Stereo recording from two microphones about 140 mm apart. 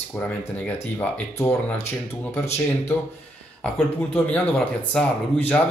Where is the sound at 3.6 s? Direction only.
10° left (ahead or behind).